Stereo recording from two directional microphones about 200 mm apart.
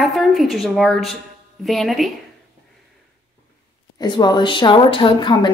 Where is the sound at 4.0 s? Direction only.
20° left (ahead or behind).